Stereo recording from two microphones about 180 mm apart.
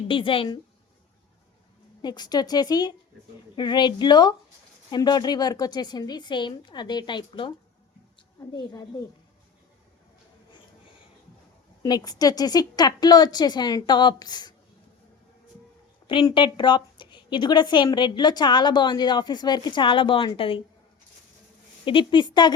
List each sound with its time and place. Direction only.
0.1 s a woman's voice: 30° left (ahead or behind)
2.0 s a woman's voice: 25° left (ahead or behind)
11.8 s a woman's voice: 20° left (ahead or behind)
16.0 s a woman's voice: 25° left (ahead or behind)
21.8 s a woman's voice: 30° left (ahead or behind)